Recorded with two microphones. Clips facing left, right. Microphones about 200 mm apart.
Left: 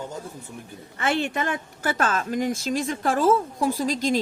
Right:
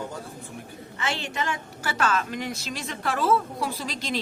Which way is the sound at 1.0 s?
55° left (ahead or behind).